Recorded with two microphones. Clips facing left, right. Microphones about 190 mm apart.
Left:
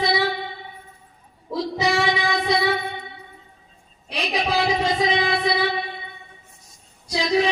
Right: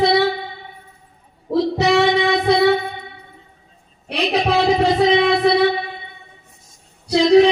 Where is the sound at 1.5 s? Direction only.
65° right (ahead or behind).